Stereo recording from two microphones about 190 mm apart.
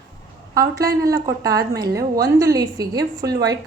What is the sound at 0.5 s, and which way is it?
A woman's voice, 20° right (ahead or behind).